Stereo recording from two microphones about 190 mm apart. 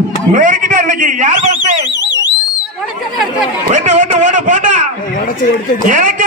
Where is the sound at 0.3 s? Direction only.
45° right (ahead or behind).